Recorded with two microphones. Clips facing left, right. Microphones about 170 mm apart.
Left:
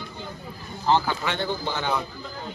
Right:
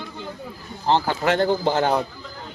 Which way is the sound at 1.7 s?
40° right (ahead or behind).